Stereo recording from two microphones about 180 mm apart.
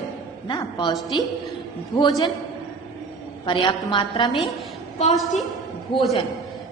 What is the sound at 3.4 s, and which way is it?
Speech, 25° left (ahead or behind).